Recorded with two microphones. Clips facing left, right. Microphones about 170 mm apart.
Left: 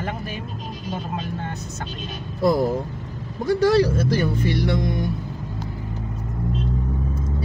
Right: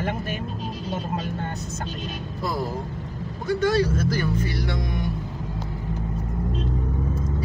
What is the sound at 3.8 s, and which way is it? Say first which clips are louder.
Speech: left 3 dB; 30° left (ahead or behind).